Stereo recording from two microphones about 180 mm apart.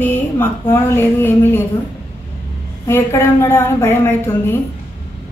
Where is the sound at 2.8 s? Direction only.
15° left (ahead or behind).